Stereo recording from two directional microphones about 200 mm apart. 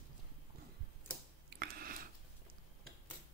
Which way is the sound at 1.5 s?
50° right (ahead or behind).